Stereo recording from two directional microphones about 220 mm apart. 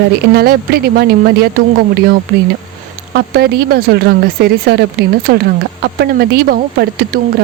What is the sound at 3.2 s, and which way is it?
A woman's voice, 45° right (ahead or behind).